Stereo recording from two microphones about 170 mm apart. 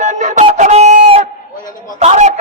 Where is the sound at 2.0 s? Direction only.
40° right (ahead or behind).